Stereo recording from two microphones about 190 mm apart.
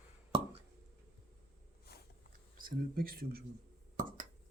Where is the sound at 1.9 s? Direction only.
55° left (ahead or behind).